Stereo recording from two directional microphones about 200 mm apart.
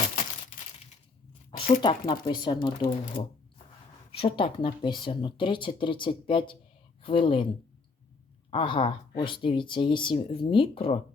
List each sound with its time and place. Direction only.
1.5 s a woman's voice: 25° left (ahead or behind)
8.4 s speech: 25° left (ahead or behind)